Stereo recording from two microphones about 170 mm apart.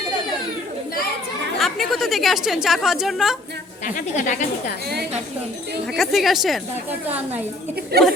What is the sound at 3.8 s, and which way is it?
Speech, 45° left (ahead or behind).